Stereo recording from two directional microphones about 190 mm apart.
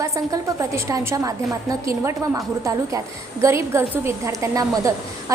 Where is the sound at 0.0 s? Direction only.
15° right (ahead or behind).